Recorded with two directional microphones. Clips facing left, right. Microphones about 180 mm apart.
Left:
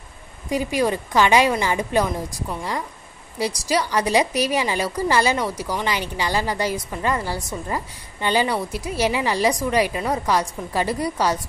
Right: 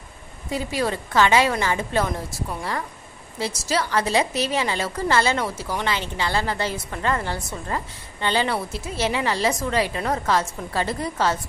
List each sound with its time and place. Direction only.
0.5 s a woman's voice: 15° left (ahead or behind)